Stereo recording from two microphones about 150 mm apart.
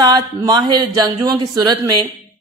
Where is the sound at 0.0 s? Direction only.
25° right (ahead or behind).